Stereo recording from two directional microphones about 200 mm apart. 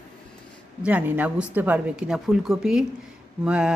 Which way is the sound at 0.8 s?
5° right (ahead or behind).